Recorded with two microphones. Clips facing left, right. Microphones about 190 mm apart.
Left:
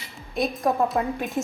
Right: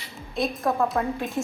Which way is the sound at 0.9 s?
15° left (ahead or behind).